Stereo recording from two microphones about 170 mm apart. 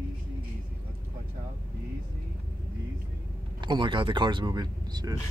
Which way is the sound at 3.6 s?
25° right (ahead or behind).